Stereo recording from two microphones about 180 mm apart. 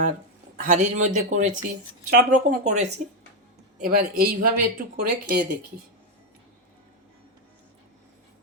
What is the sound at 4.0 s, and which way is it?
A man's voice, 55° right (ahead or behind).